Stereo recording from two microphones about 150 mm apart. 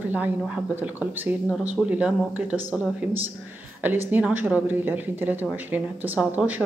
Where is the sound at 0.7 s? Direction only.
10° right (ahead or behind).